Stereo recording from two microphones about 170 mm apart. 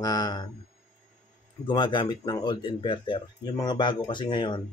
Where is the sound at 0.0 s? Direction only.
25° left (ahead or behind).